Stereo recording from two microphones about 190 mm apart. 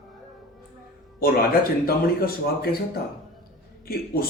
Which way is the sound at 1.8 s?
55° left (ahead or behind).